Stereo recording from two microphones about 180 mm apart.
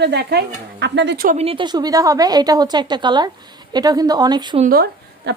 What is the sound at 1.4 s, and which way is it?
A woman's voice, 30° right (ahead or behind).